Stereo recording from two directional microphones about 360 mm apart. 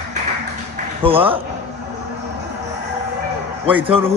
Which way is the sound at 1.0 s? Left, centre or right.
Centre.